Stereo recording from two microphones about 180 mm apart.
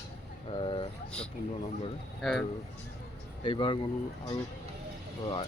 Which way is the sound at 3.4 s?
25° left (ahead or behind).